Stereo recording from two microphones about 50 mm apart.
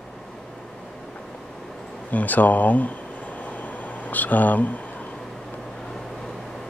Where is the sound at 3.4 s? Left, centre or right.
Left.